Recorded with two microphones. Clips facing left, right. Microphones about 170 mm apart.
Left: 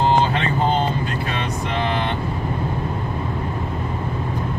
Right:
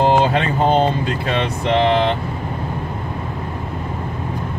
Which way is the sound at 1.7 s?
70° right (ahead or behind).